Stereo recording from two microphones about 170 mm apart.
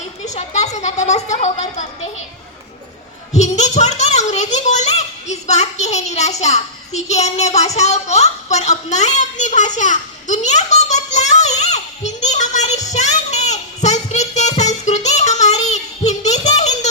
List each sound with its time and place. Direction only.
0.3 s a sound: 40° left (ahead or behind)
3.3 s a child's voice: 40° left (ahead or behind)
12.9 s music: 40° left (ahead or behind)